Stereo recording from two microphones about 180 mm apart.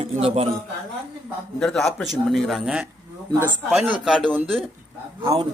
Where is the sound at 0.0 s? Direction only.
35° right (ahead or behind).